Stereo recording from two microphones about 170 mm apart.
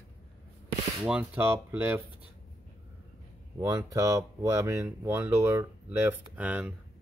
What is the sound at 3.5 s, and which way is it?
Speech, 20° right (ahead or behind).